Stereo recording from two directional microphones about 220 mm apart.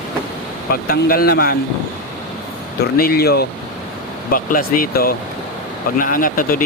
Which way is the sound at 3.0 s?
45° left (ahead or behind).